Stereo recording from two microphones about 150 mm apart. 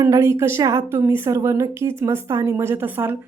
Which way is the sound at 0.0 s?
20° right (ahead or behind).